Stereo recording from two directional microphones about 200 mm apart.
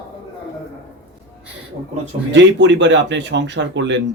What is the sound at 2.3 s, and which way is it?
Speech, 65° right (ahead or behind).